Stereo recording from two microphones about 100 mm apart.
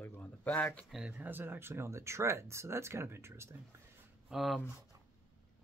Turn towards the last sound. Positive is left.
turn(degrees=0)  # may be behind; listen again after turning